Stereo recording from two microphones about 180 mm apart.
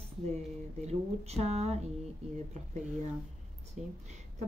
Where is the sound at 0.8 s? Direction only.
35° right (ahead or behind).